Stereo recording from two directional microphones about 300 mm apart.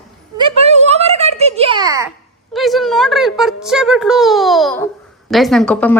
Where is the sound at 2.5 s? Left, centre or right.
Centre.